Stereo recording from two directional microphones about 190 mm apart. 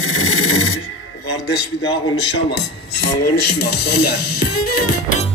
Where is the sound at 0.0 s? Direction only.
90° left.